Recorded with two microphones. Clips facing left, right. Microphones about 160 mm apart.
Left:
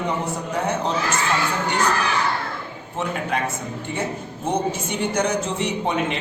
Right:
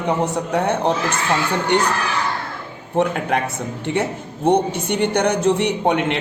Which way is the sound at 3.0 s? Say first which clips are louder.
Right 9 dB; 60° right (ahead or behind).